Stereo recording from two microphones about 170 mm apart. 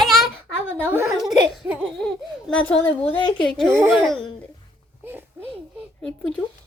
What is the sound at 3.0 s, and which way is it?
Speech, 30° left (ahead or behind).